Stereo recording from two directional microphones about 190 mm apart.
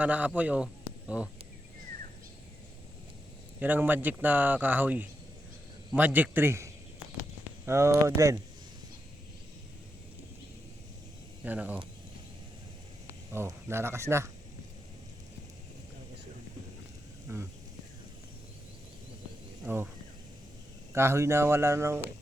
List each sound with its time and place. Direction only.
0.0 s speech: 5° right (ahead or behind)
3.6 s a man's voice: 10° right (ahead or behind)
11.4 s a man's voice: 10° right (ahead or behind)
13.3 s a man's voice: 15° right (ahead or behind)
17.3 s a man's voice: 15° right (ahead or behind)
19.6 s a man's voice: 10° right (ahead or behind)
20.9 s a man's voice: 15° right (ahead or behind)